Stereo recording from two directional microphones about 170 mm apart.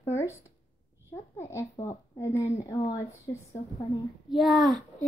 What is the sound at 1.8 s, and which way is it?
A woman's voice, 15° left (ahead or behind).